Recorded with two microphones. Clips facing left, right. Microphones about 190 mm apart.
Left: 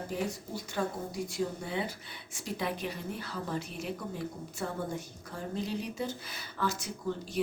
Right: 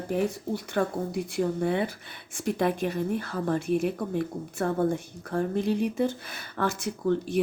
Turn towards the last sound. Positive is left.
turn(degrees=-60)  # may be behind; listen again after turning